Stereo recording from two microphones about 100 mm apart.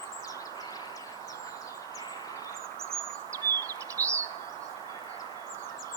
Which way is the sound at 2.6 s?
25° right (ahead or behind).